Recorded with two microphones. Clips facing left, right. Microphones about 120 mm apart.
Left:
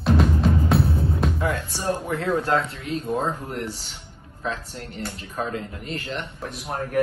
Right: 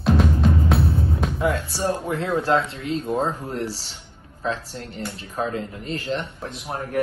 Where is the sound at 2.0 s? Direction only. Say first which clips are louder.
Even; 25° right (ahead or behind).